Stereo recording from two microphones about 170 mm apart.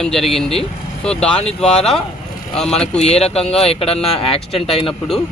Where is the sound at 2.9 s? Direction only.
40° left (ahead or behind).